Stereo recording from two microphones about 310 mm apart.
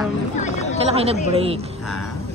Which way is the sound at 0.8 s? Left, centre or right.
Centre.